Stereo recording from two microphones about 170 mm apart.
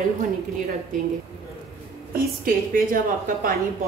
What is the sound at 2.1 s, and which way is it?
A woman's voice, 55° right (ahead or behind).